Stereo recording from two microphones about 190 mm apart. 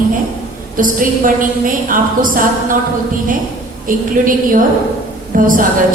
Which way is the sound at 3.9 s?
45° right (ahead or behind).